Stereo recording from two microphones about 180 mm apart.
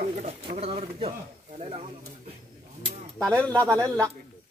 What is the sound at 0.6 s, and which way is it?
Speech, 35° right (ahead or behind).